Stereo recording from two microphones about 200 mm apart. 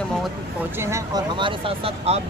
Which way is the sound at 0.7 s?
15° right (ahead or behind).